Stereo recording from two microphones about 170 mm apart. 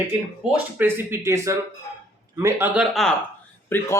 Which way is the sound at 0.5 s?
10° right (ahead or behind).